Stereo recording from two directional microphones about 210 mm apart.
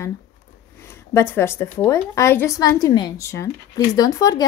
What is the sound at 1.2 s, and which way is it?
Speech, 10° left (ahead or behind).